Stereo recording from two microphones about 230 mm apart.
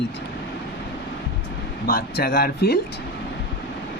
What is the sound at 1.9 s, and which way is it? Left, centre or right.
Speech, left.